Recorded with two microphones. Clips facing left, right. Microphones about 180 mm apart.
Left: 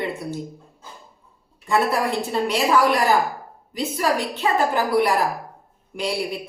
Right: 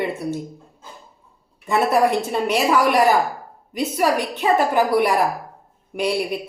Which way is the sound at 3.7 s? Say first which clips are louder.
Right 3 dB; 20° right (ahead or behind).